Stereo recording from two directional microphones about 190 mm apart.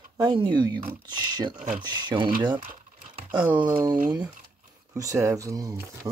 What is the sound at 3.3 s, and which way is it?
Speech, 10° right (ahead or behind).